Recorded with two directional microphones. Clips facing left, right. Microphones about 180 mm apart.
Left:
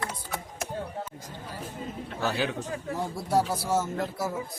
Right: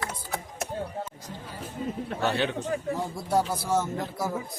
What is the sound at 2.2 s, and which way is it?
Speech, centre (ahead or behind).